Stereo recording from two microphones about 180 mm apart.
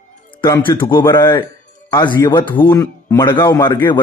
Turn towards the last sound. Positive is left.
turn(degrees=25)  # may be behind; listen again after turning